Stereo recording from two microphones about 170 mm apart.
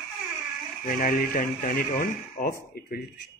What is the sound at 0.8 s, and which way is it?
Speech, 55° left (ahead or behind).